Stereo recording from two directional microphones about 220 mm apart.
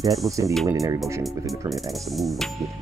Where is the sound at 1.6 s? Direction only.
Centre (ahead or behind).